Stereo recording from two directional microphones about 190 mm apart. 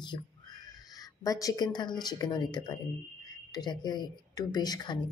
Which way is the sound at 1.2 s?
20° left (ahead or behind).